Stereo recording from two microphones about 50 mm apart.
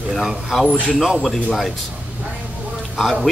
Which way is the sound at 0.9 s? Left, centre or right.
Centre.